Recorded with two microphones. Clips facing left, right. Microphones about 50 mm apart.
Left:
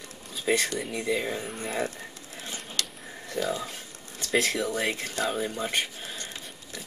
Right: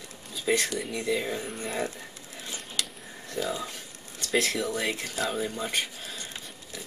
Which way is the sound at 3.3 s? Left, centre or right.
Centre.